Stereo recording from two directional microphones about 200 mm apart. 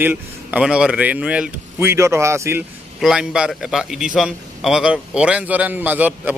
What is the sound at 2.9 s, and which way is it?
A man's voice, centre (ahead or behind).